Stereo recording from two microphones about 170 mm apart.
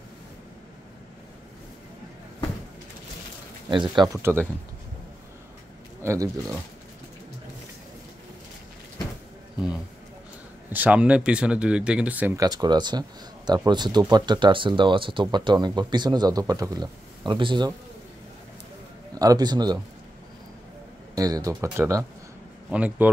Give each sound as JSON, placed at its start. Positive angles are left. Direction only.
{"t": 3.7, "sound": "speech", "side_deg": -25}
{"t": 6.0, "sound": "speech", "side_deg": -20}
{"t": 10.7, "sound": "speech", "side_deg": -10}
{"t": 12.4, "sound": "speech", "side_deg": -20}
{"t": 19.1, "sound": "speech", "side_deg": -20}
{"t": 21.1, "sound": "speech", "side_deg": -20}